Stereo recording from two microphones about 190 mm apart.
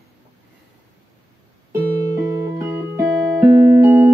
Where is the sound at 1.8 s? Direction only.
50° right (ahead or behind).